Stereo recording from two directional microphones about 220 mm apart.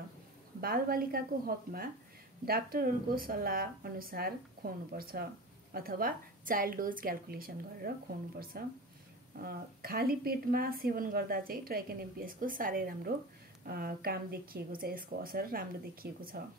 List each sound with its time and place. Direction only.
0.6 s a woman's voice: 40° right (ahead or behind)